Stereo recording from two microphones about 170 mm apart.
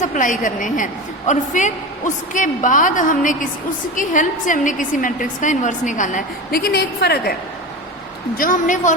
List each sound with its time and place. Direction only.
0.0 s a woman's voice: 50° left (ahead or behind); by 7.3 s 70° left (ahead or behind)
8.4 s a woman's voice: 50° left (ahead or behind)